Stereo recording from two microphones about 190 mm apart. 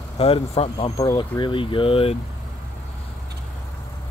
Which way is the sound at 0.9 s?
20° left (ahead or behind).